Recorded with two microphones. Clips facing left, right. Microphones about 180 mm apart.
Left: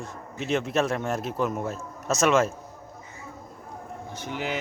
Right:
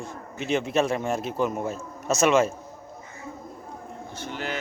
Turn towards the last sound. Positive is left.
turn(degrees=15)  # may be behind; listen again after turning